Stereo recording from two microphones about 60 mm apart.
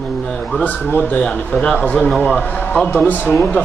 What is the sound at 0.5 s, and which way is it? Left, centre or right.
Speech, left.